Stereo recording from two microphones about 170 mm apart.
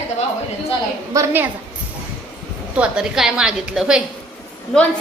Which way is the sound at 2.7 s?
5° right (ahead or behind).